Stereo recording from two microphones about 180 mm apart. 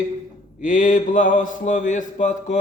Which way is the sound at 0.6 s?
45° left (ahead or behind).